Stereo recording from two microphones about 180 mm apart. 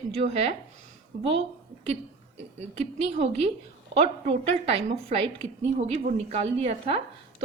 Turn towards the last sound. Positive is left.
turn(degrees=-35)  # may be behind; listen again after turning